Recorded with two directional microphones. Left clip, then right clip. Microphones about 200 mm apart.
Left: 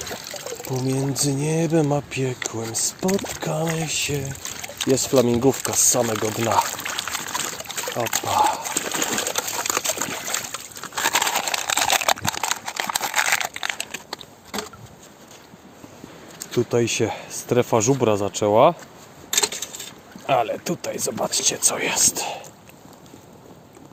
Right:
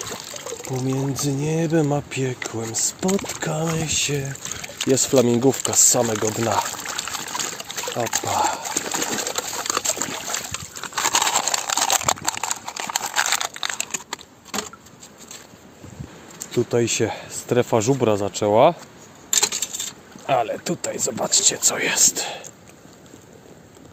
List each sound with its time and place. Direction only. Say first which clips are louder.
0.0 s water: even; 15° left (ahead or behind)
0.8 s speech: left 1 dB; centre (ahead or behind)
6.2 s pour: left 1 dB; centre (ahead or behind)
8.0 s speech: left 1 dB; 5° left (ahead or behind)
8.4 s water: left 3 dB; 10° right (ahead or behind)
8.7 s a sound: left 1 dB; 5° left (ahead or behind)
12.5 s crumpling: left 3 dB; 15° left (ahead or behind); by 13.7 s centre (ahead or behind)
13.7 s a sound: right 2 dB; 20° right (ahead or behind)
16.5 s speech: even; centre (ahead or behind)
19.3 s keys jangling: right 1 dB; 30° right (ahead or behind)
20.2 s speech: even; centre (ahead or behind)